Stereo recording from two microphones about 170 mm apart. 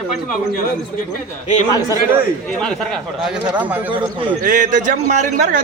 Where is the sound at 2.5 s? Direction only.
5° left (ahead or behind).